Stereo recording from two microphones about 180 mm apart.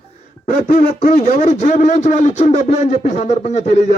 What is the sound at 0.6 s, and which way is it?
Speech, 40° left (ahead or behind).